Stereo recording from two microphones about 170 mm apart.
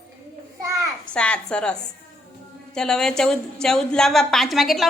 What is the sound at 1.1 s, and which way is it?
A woman's voice, 5° left (ahead or behind).